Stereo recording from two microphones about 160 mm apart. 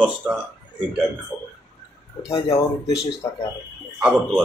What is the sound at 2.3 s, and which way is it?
Speech, 30° left (ahead or behind).